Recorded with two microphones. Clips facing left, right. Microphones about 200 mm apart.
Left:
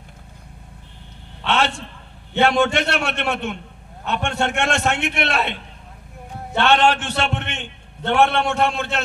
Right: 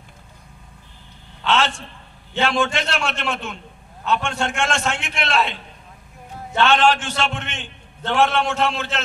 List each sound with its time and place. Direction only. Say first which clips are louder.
1.4 s a man's voice: even; 65° left (ahead or behind)
6.6 s a man's voice: even; 60° left (ahead or behind)